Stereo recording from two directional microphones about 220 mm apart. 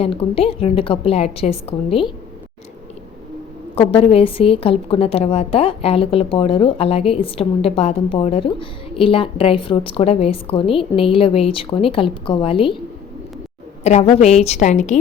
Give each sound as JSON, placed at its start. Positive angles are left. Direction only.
{"t": 0.0, "sound": "a woman's voice", "side_deg": 25}
{"t": 3.8, "sound": "a woman's voice", "side_deg": 25}
{"t": 13.8, "sound": "a woman's voice", "side_deg": 30}